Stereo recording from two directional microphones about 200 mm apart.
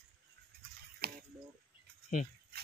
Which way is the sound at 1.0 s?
50° right (ahead or behind).